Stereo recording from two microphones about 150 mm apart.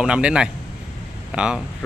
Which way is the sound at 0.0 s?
5° right (ahead or behind).